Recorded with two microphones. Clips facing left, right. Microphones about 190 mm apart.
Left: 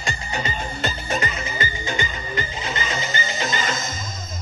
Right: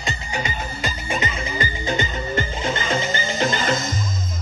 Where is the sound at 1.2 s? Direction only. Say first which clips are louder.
Right 1 dB; 30° right (ahead or behind); by 3.4 s 50° right (ahead or behind).